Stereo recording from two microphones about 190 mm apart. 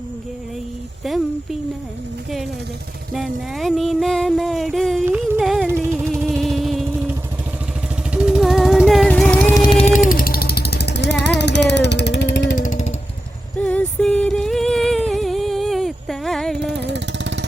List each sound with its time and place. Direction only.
1.0 s a sound: centre (ahead or behind)
3.2 s a sound: centre (ahead or behind)
5.0 s music: 10° right (ahead or behind)
8.1 s music: 5° right (ahead or behind)
9.7 s vehicle: 40° left (ahead or behind); by 12.5 s 65° left (ahead or behind)
12.5 s music: 45° left (ahead or behind)
13.6 s singing: 5° left (ahead or behind)
16.8 s vehicle: 65° right (ahead or behind)